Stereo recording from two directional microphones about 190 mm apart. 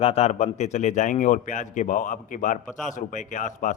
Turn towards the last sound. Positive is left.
turn(degrees=40)  # may be behind; listen again after turning